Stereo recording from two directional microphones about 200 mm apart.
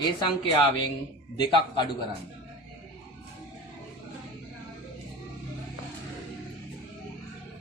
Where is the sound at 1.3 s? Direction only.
25° left (ahead or behind).